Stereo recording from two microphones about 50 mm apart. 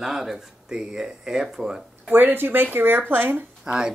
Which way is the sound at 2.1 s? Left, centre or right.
Right.